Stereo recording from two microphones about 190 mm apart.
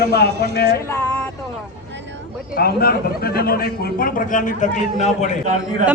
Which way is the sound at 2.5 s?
50° left (ahead or behind).